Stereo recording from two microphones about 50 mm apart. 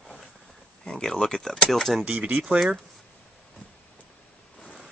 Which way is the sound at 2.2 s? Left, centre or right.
Right.